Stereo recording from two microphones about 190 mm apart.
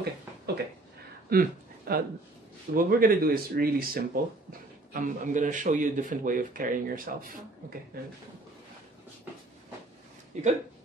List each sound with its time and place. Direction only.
1.3 s speech: 50° right (ahead or behind)
10.3 s speech: 40° right (ahead or behind)